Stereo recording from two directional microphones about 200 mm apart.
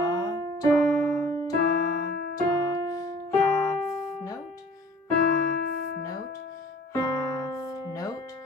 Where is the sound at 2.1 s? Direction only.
70° left (ahead or behind).